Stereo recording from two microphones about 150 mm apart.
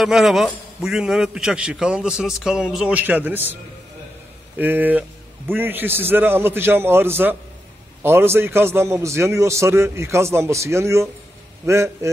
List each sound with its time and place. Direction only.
0.0 s a man's voice: 5° right (ahead or behind)
4.6 s a man's voice: 10° right (ahead or behind)